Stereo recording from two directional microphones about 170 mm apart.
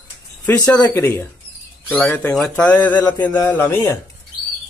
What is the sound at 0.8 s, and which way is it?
Speech, 15° left (ahead or behind).